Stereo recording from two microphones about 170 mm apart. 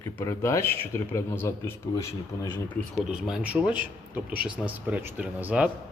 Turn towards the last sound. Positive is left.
turn(degrees=-10)  # may be behind; listen again after turning